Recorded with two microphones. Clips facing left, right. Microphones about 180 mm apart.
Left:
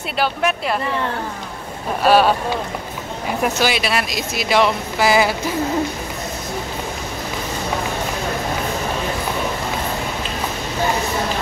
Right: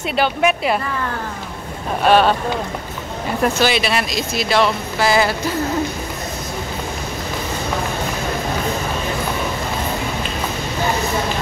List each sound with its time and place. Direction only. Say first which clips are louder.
0.1 s speech: right 2 dB; centre (ahead or behind)
2.0 s speech: even; 5° left (ahead or behind)
3.4 s speech: right 2 dB; 5° left (ahead or behind)